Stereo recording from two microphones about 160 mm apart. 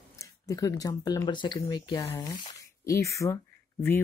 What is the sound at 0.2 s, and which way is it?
Speech, 20° left (ahead or behind).